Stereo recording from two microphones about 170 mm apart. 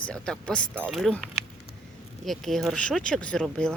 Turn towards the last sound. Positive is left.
turn(degrees=5)  # may be behind; listen again after turning